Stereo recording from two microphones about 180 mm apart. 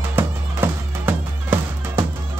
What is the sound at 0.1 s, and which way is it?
Music, 10° right (ahead or behind).